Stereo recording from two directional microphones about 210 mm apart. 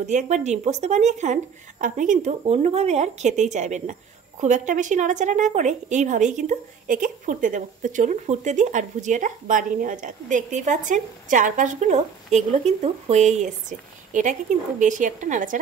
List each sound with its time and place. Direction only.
0.0 s a woman's voice: 35° right (ahead or behind)